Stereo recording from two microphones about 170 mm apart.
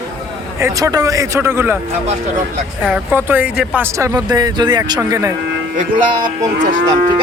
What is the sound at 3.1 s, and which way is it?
Speech, 10° right (ahead or behind).